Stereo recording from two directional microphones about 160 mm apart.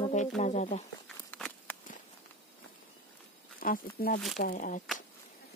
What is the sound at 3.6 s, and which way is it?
Speech, 60° left (ahead or behind).